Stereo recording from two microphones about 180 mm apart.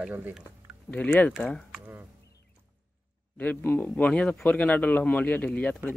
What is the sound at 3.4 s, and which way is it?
Speech, 10° left (ahead or behind).